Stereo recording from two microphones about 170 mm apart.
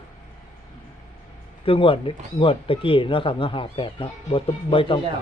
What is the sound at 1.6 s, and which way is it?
Speech, 30° left (ahead or behind).